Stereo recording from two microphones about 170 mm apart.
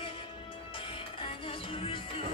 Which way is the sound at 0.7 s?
30° left (ahead or behind).